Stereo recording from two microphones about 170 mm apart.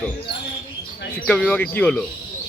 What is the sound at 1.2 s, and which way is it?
Speech, 5° left (ahead or behind).